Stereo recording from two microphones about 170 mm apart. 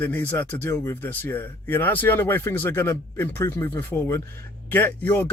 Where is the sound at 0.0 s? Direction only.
10° left (ahead or behind).